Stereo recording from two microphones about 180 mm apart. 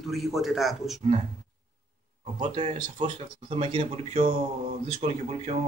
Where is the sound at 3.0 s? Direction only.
30° right (ahead or behind).